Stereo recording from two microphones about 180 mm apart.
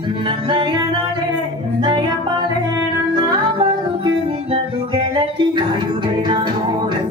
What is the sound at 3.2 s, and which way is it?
Music, 25° right (ahead or behind).